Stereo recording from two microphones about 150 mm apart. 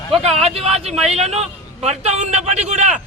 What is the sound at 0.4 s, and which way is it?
A man's voice, 40° right (ahead or behind).